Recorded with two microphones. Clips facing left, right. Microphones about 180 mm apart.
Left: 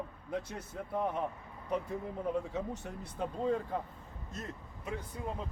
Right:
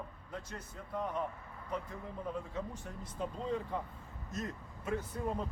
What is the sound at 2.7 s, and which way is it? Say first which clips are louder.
Speech: left 4 dB; 75° left (ahead or behind).